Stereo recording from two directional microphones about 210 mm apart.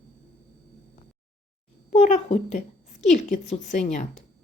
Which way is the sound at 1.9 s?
35° left (ahead or behind).